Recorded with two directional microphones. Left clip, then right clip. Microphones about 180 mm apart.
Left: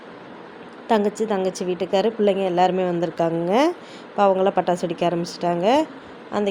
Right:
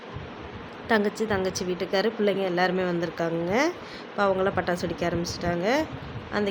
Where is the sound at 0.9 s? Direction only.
15° left (ahead or behind).